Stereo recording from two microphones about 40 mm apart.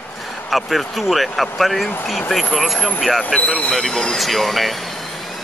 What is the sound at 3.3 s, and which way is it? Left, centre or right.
Speech, centre.